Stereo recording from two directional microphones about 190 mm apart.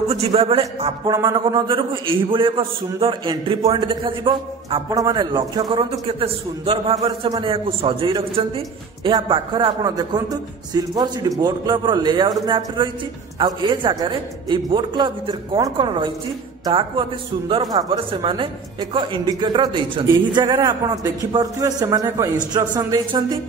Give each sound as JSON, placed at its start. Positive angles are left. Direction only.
{"t": 0.1, "sound": "a man's voice", "side_deg": -30}
{"t": 1.0, "sound": "a man's voice", "side_deg": -20}